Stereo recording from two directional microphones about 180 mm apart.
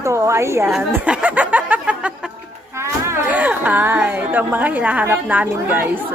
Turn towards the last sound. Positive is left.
turn(degrees=-10)  # may be behind; listen again after turning